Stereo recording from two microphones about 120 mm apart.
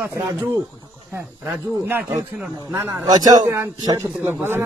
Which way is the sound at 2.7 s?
30° right (ahead or behind).